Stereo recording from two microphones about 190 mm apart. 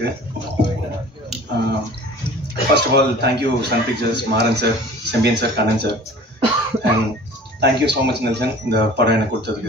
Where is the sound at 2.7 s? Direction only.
65° right (ahead or behind).